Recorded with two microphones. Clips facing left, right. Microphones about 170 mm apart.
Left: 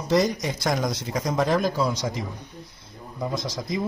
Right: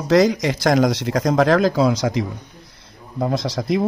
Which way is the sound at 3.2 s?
70° right (ahead or behind).